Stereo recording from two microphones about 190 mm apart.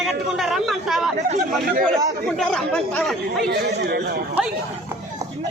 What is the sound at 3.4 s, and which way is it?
Speech, 55° right (ahead or behind).